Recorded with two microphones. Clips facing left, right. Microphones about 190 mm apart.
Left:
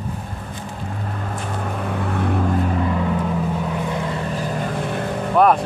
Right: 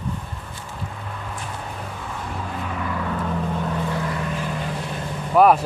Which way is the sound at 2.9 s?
20° left (ahead or behind).